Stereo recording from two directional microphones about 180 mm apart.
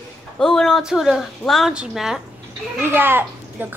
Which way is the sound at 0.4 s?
5° left (ahead or behind).